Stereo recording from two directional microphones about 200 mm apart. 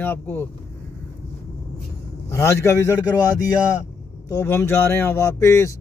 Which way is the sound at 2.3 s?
15° left (ahead or behind).